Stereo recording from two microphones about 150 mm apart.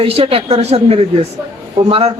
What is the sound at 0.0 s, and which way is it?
A man's voice, 40° right (ahead or behind).